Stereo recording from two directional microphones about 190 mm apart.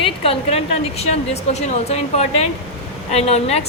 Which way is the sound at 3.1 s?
35° left (ahead or behind).